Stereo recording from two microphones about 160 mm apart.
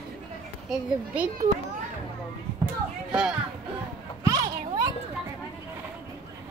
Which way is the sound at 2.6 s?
5° right (ahead or behind).